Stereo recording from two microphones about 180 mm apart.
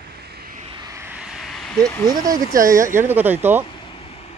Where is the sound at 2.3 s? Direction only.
50° right (ahead or behind).